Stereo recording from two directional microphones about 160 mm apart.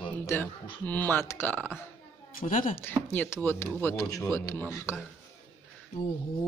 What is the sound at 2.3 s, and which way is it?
Speech, 60° left (ahead or behind).